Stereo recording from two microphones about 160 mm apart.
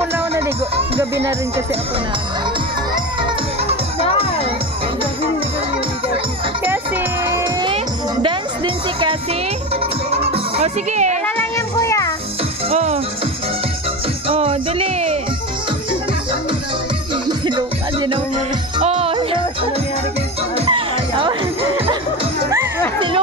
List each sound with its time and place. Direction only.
0.0 s music: 15° right (ahead or behind)
7.6 s music: 30° right (ahead or behind)
10.3 s music: 45° right (ahead or behind)
11.2 s music: 15° left (ahead or behind)
12.6 s music: 40° right (ahead or behind)
14.3 s music: 35° right (ahead or behind)
17.3 s music: 25° right (ahead or behind)
18.8 s music: 40° right (ahead or behind)
20.5 s music: 35° right (ahead or behind)